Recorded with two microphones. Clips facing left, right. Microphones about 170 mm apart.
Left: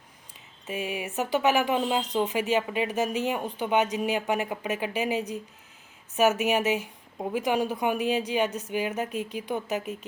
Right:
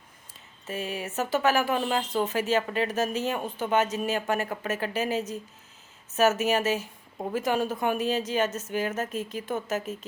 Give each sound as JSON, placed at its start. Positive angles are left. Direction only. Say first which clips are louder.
{"t": 0.7, "sound": "speech", "louder": "left 1 dB", "side_deg": 15}